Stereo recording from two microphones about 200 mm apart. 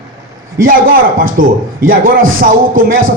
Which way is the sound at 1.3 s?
45° right (ahead or behind).